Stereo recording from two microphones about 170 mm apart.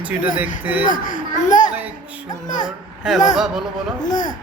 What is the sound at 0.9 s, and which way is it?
Speech, 50° left (ahead or behind).